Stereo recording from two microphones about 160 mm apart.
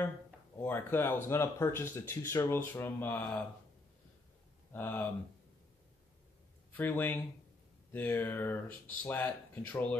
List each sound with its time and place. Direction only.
0.6 s speech: 15° left (ahead or behind)
4.7 s speech: 10° left (ahead or behind)
6.7 s speech: 10° left (ahead or behind)